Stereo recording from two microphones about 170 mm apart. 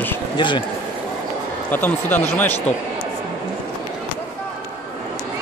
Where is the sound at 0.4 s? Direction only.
30° left (ahead or behind).